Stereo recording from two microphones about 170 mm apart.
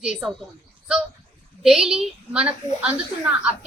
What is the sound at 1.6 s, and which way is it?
Speech, centre (ahead or behind).